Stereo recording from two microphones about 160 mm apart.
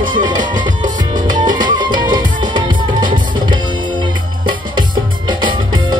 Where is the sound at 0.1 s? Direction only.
30° right (ahead or behind).